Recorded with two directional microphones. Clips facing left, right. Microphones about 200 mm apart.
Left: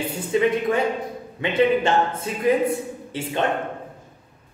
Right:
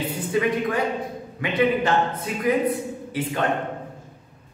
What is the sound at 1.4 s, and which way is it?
A man's voice, 25° left (ahead or behind).